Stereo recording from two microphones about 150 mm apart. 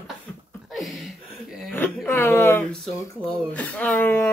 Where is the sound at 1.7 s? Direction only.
15° left (ahead or behind).